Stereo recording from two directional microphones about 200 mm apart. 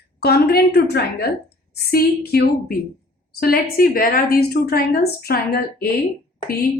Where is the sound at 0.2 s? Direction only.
50° left (ahead or behind).